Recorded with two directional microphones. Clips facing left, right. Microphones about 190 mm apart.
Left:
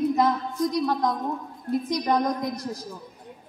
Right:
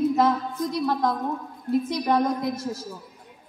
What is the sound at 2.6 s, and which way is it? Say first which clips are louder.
Music: right 2 dB; 15° left (ahead or behind).